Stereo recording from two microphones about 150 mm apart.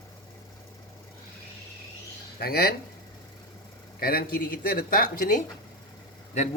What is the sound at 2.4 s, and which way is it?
Speech, 90° left.